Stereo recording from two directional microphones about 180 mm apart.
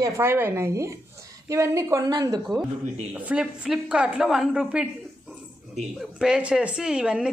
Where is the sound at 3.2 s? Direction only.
5° right (ahead or behind).